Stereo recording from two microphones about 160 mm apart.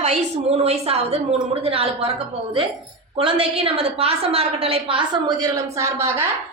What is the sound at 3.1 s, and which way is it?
A woman's voice, 35° right (ahead or behind).